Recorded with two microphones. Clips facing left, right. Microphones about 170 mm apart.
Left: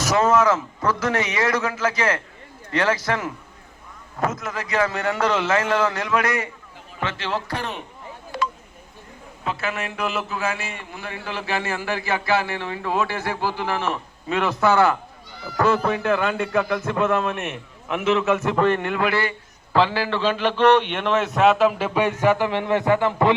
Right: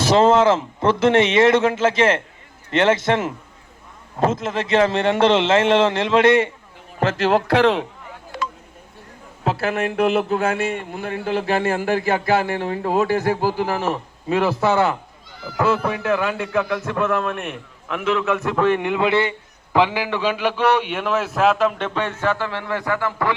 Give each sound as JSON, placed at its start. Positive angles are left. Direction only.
{"t": 0.0, "sound": "speech", "side_deg": -30}
{"t": 7.0, "sound": "a man's voice", "side_deg": -45}
{"t": 7.4, "sound": "a man's voice", "side_deg": -90}
{"t": 9.4, "sound": "a man's voice", "side_deg": -65}
{"t": 15.5, "sound": "a man's voice", "side_deg": -5}